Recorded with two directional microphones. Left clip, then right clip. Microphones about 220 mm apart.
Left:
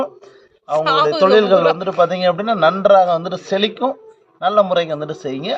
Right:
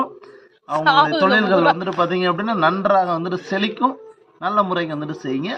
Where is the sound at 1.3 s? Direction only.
25° left (ahead or behind).